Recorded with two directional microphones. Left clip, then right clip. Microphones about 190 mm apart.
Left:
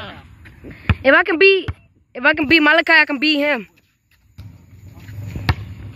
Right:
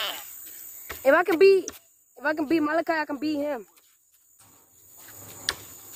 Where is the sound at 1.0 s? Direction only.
Centre (ahead or behind).